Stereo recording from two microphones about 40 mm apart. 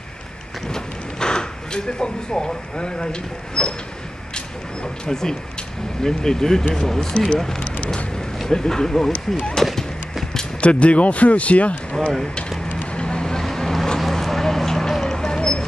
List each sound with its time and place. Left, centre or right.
0.7 s speech: centre
4.8 s speech: centre
9.8 s horse: centre
10.6 s speech: left
12.9 s vehicle: left